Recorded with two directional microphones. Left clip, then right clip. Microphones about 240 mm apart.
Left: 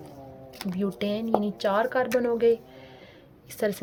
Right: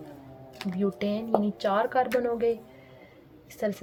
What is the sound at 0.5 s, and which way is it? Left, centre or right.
Speech, left.